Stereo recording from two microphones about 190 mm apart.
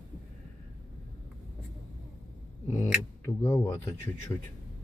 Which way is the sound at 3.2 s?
15° left (ahead or behind).